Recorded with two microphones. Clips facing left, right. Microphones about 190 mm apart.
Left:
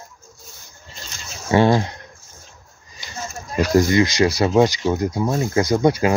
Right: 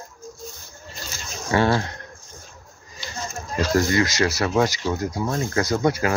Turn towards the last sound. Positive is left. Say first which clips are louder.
# left 4 dB
turn(degrees=15)  # may be behind; listen again after turning